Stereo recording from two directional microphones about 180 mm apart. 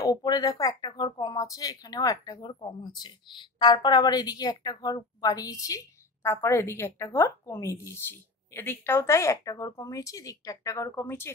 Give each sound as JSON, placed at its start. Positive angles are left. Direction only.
{"t": 0.0, "sound": "a woman's voice", "side_deg": 20}